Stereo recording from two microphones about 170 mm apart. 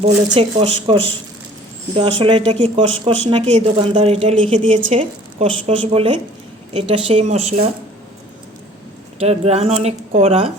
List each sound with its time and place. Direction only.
0.3 s speech: 35° right (ahead or behind)
2.0 s speech: 30° right (ahead or behind)
9.1 s speech: 35° right (ahead or behind)